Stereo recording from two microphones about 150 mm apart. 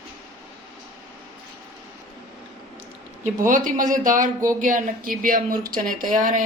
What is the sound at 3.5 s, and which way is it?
Speech, 60° right (ahead or behind).